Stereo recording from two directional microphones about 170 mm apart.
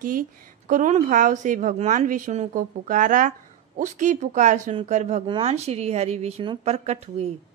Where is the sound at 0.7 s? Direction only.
45° right (ahead or behind).